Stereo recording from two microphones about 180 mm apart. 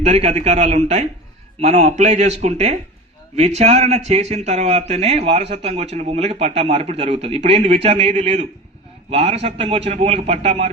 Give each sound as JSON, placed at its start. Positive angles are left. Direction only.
{"t": 0.0, "sound": "a man's voice", "side_deg": -35}